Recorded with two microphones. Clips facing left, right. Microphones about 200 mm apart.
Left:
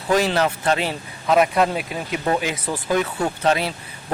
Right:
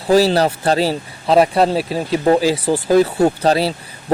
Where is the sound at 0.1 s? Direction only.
35° right (ahead or behind).